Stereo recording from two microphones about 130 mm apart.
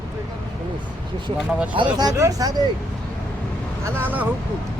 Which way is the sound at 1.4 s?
10° right (ahead or behind).